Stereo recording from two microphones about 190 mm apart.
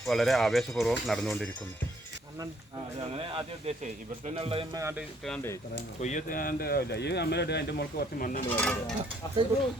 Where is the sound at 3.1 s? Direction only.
30° right (ahead or behind).